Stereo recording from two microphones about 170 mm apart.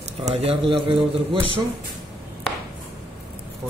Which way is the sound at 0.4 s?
35° right (ahead or behind).